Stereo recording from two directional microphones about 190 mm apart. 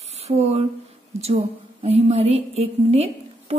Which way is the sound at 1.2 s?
30° right (ahead or behind).